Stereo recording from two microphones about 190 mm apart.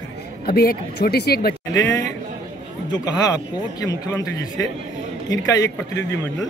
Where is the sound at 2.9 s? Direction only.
20° left (ahead or behind).